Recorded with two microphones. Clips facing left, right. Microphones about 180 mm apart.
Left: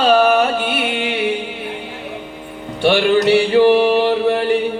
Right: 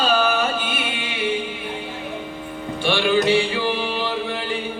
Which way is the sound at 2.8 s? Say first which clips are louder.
Left 7 dB; 65° left (ahead or behind).